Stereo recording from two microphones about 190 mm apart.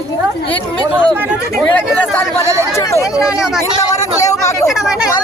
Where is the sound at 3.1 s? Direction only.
5° right (ahead or behind).